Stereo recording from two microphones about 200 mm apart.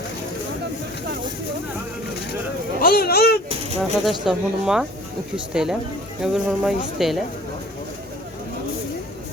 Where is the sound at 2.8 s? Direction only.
50° left (ahead or behind).